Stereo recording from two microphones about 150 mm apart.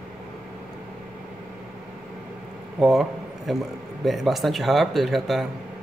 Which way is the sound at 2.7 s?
Centre (ahead or behind).